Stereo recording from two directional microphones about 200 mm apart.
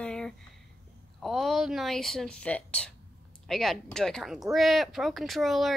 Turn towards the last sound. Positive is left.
turn(degrees=0)  # may be behind; listen again after turning